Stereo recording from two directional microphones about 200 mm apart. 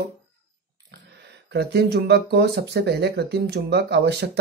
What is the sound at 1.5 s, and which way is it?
Speech, 55° right (ahead or behind).